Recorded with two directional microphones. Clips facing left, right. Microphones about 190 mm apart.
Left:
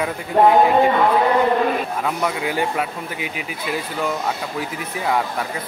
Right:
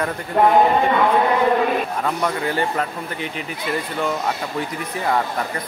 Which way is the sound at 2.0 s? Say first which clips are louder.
Even; 5° left (ahead or behind).